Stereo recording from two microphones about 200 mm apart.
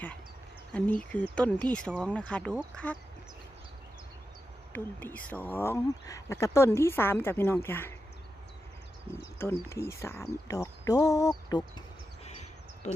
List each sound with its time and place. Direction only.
0.7 s speech: 5° left (ahead or behind)
4.7 s speech: 10° left (ahead or behind)
9.4 s speech: 15° left (ahead or behind)
12.2 s a sound: 35° left (ahead or behind)